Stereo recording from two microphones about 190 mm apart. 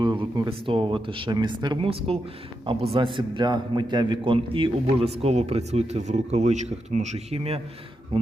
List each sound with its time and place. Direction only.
0.0 s a man's voice: 25° right (ahead or behind)